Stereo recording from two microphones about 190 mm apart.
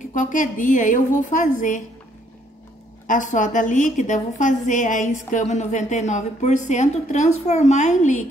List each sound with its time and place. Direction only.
0.0 s a woman's voice: 45° left (ahead or behind)
3.1 s a woman's voice: 40° left (ahead or behind)